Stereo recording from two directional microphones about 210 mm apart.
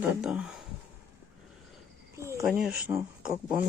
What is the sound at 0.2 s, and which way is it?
Speech, 5° right (ahead or behind).